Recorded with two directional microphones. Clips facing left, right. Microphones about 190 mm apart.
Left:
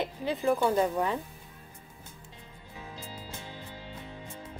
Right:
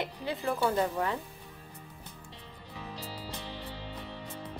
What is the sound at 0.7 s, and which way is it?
Speech, 15° left (ahead or behind).